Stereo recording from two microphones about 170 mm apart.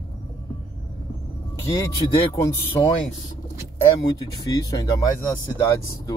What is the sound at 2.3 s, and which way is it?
Speech, 15° left (ahead or behind).